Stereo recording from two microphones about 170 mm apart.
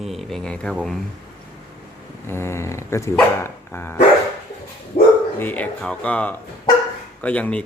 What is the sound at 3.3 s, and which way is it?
Dog, 15° left (ahead or behind).